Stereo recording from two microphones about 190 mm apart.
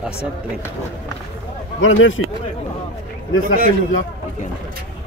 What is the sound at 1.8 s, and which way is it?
Speech, 85° left.